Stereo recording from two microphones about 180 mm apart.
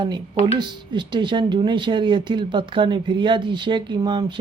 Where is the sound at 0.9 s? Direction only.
25° right (ahead or behind).